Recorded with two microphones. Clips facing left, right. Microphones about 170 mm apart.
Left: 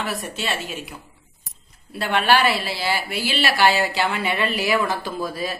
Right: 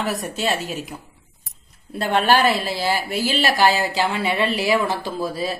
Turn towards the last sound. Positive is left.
turn(degrees=-30)  # may be behind; listen again after turning